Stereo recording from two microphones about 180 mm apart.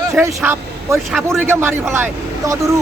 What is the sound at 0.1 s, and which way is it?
Speech, 15° right (ahead or behind).